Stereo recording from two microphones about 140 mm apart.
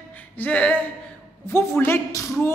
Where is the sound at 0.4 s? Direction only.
10° left (ahead or behind).